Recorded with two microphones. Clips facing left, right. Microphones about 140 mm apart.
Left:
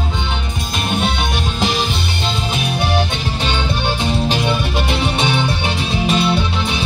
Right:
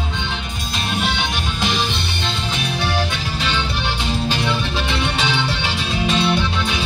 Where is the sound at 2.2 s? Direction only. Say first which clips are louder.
Left 4 dB; 15° left (ahead or behind).